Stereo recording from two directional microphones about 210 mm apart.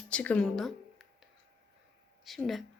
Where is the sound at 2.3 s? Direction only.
Centre (ahead or behind).